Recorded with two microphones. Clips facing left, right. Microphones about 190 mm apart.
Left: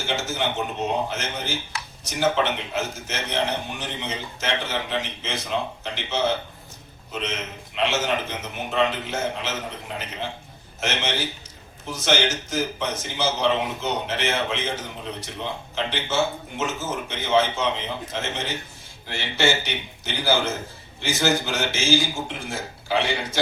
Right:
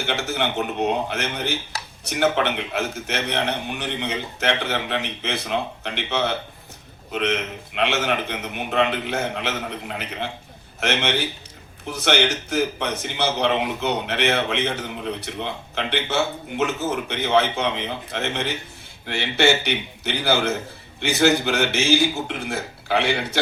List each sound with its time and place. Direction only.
0.0 s a man's voice: 60° right (ahead or behind)
1.7 s a sound: 40° right (ahead or behind)
2.0 s a man's voice: 60° right (ahead or behind)